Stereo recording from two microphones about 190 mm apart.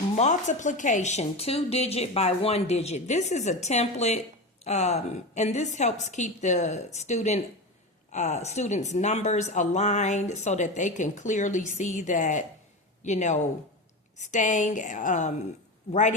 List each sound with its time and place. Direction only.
0.2 s speech: 40° left (ahead or behind)